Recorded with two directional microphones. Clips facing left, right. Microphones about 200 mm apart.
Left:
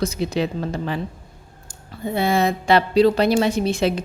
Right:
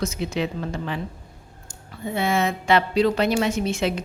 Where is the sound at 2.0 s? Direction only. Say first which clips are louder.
Left 3 dB; 35° left (ahead or behind).